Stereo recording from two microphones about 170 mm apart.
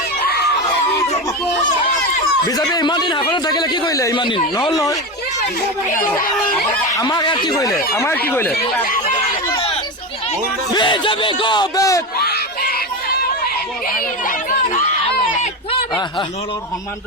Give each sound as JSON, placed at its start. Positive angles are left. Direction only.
{"t": 2.6, "sound": "a man's voice", "side_deg": 25}
{"t": 6.9, "sound": "a man's voice", "side_deg": 25}
{"t": 7.9, "sound": "speech", "side_deg": 15}
{"t": 9.5, "sound": "chatter", "side_deg": 30}
{"t": 10.8, "sound": "a man's voice", "side_deg": 30}